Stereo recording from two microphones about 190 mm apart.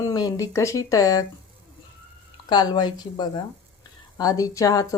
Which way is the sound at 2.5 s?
20° left (ahead or behind).